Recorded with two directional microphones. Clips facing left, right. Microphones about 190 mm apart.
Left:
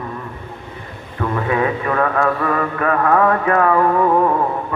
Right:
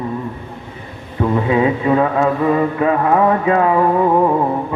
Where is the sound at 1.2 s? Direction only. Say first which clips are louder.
Right 4 dB; 20° right (ahead or behind).